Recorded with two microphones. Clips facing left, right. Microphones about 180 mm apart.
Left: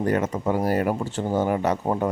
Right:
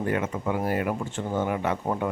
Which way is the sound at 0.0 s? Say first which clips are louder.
Left 4 dB; 40° left (ahead or behind).